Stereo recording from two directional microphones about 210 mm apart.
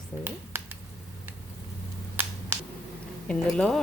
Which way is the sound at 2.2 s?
10° right (ahead or behind).